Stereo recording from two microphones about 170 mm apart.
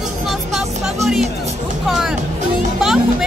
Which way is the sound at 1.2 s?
40° right (ahead or behind).